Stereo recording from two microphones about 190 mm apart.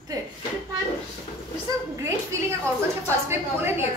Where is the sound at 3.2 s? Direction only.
10° right (ahead or behind).